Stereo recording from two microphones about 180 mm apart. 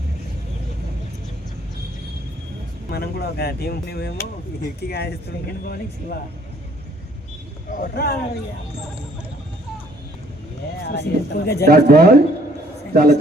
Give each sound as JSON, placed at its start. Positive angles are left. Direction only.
{"t": 2.9, "sound": "speech", "side_deg": 60}
{"t": 7.7, "sound": "speech", "side_deg": 55}
{"t": 10.8, "sound": "speech", "side_deg": 70}
{"t": 11.6, "sound": "a man's voice", "side_deg": -60}